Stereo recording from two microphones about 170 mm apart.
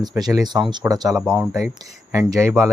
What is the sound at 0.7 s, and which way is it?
Speech, 20° right (ahead or behind).